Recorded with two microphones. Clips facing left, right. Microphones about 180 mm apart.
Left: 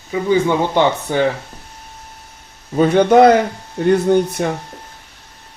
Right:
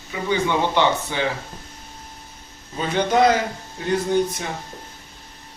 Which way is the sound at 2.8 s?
55° left (ahead or behind).